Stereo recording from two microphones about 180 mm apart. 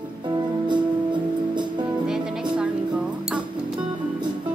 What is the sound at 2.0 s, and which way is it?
Music, 5° right (ahead or behind).